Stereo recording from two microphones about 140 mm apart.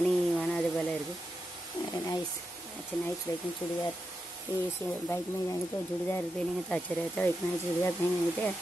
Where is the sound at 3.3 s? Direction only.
20° left (ahead or behind).